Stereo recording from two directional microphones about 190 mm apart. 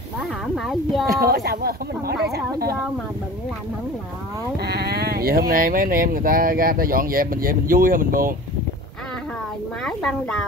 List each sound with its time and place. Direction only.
0.2 s a sound: centre (ahead or behind)
1.2 s speech: 55° right (ahead or behind)
4.6 s speech: 55° right (ahead or behind)
9.8 s speech: 5° left (ahead or behind)